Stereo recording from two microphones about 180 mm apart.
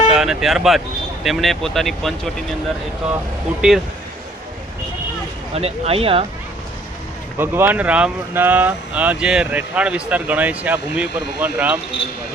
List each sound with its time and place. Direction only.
0.1 s speech: 5° right (ahead or behind)
3.6 s speech: 5° right (ahead or behind)
5.5 s speech: 35° right (ahead or behind)
7.3 s speech: 10° right (ahead or behind)